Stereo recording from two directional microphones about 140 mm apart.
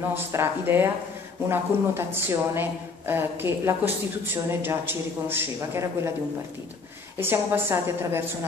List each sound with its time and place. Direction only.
0.1 s speech: 15° right (ahead or behind)
7.2 s speech: 15° right (ahead or behind)